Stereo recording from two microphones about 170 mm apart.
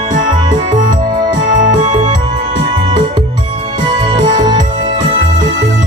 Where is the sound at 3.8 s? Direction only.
25° right (ahead or behind).